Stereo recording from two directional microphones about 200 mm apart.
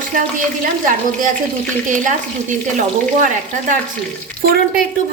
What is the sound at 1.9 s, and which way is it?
Speech, 40° right (ahead or behind).